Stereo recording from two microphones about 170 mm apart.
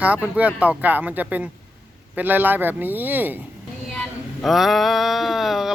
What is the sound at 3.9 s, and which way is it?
Speech, centre (ahead or behind).